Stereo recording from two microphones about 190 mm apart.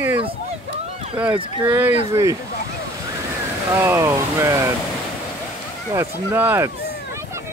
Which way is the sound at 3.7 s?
15° right (ahead or behind).